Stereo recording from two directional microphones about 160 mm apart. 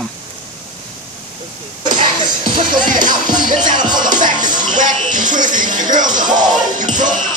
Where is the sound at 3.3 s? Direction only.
25° right (ahead or behind).